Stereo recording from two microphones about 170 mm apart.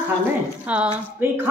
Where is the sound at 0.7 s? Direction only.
10° right (ahead or behind).